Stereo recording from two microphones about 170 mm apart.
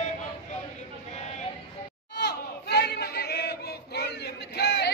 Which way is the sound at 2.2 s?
75° left (ahead or behind).